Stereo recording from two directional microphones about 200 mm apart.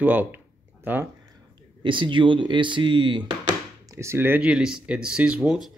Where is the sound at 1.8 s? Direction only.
25° right (ahead or behind); by 5.7 s 5° right (ahead or behind).